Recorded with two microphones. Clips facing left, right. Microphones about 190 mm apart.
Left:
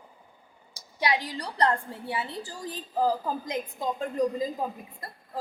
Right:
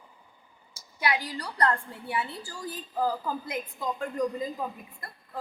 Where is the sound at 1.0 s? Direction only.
30° left (ahead or behind).